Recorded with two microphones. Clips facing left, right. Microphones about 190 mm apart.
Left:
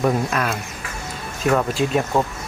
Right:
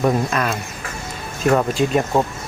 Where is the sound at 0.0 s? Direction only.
5° left (ahead or behind).